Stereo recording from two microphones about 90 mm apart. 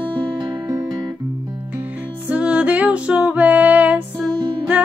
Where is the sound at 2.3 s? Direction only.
15° right (ahead or behind).